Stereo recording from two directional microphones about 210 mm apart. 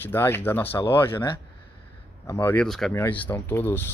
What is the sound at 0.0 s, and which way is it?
Speech, 10° left (ahead or behind).